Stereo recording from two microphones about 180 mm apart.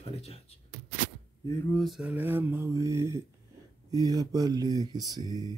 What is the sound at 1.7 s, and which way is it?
Speech, centre (ahead or behind).